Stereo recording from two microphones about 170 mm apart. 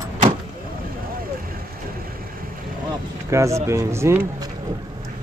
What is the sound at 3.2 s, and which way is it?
Speech, 15° right (ahead or behind).